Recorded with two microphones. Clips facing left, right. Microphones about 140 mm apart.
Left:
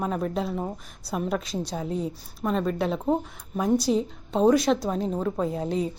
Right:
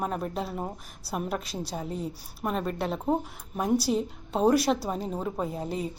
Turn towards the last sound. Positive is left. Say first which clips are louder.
# left 5 dB
turn(degrees=-5)  # may be behind; listen again after turning